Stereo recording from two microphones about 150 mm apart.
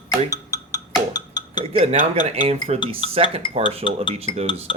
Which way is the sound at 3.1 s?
40° right (ahead or behind).